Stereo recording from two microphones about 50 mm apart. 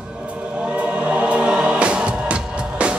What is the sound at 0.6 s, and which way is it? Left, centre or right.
Music, right.